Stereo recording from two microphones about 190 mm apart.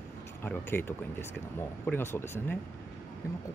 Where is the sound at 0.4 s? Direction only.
10° left (ahead or behind).